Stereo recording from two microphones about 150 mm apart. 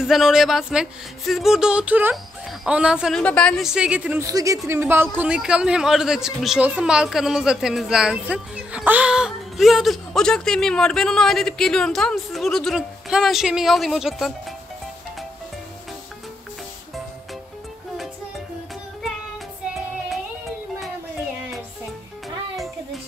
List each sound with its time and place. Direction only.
0.0 s a man's voice: 5° right (ahead or behind)
3.2 s a man's voice: 5° left (ahead or behind)
4.2 s a woman's voice: 20° right (ahead or behind); by 14.3 s centre (ahead or behind)